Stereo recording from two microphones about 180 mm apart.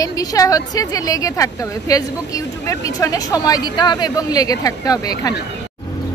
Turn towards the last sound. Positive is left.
turn(degrees=20)  # may be behind; listen again after turning